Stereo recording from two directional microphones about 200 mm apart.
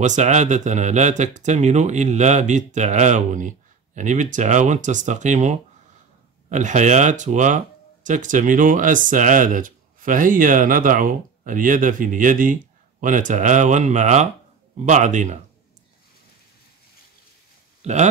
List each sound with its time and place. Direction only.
0.0 s speech: 35° right (ahead or behind)
17.8 s speech: 35° right (ahead or behind)